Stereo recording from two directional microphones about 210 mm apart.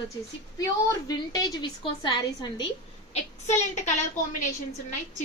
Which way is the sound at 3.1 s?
35° left (ahead or behind).